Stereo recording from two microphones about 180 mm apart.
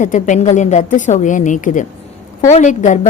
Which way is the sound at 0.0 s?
45° left (ahead or behind).